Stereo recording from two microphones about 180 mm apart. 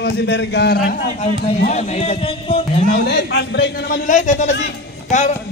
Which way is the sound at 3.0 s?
65° left (ahead or behind).